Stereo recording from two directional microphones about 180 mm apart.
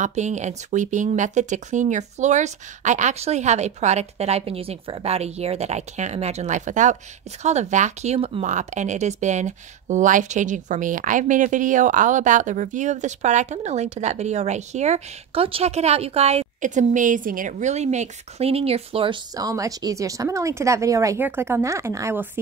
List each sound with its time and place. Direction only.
0.0 s speech: 40° right (ahead or behind)
19.3 s a woman's voice: 20° right (ahead or behind)